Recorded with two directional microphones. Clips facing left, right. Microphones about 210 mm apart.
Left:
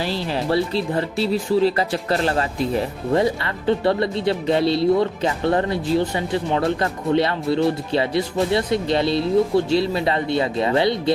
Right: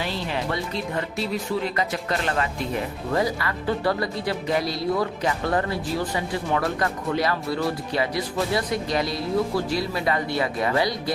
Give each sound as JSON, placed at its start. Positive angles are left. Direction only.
{"t": 0.0, "sound": "speech", "side_deg": 30}